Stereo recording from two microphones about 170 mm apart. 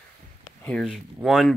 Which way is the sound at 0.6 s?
5° left (ahead or behind).